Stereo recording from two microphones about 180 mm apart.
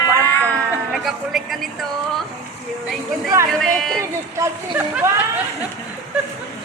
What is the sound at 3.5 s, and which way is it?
Speech, centre (ahead or behind).